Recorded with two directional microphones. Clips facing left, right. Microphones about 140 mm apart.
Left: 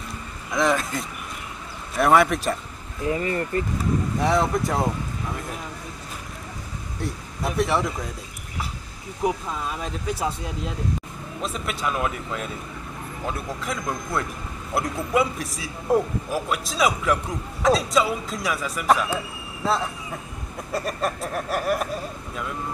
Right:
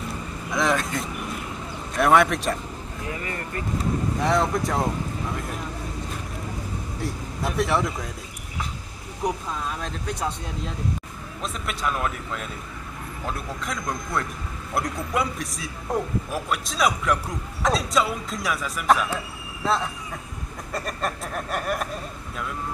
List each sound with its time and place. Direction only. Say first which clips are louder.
0.5 s a man's voice: left 1 dB; centre (ahead or behind)
3.1 s speech: left 9 dB; 30° left (ahead or behind)
4.2 s a man's voice: left 1 dB; centre (ahead or behind)
7.0 s speech: left 1 dB; centre (ahead or behind)
9.2 s a man's voice: left 2 dB; 5° left (ahead or behind)